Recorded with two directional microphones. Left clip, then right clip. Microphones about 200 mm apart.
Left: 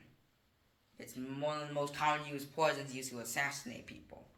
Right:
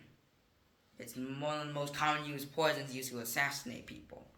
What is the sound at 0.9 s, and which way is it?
Speech, 15° right (ahead or behind).